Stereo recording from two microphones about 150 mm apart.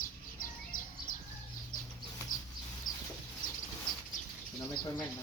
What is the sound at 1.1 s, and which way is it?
Bird, 65° left (ahead or behind).